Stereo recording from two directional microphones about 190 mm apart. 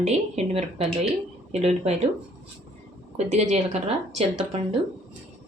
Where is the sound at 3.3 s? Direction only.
35° right (ahead or behind).